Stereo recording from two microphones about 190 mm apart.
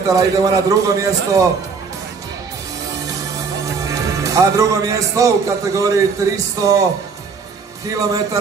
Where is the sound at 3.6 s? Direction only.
15° right (ahead or behind).